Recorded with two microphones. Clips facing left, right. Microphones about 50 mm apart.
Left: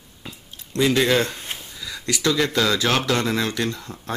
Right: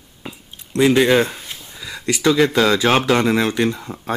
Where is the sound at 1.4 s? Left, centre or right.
Left.